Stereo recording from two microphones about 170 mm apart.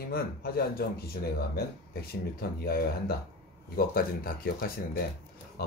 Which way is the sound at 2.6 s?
60° left (ahead or behind).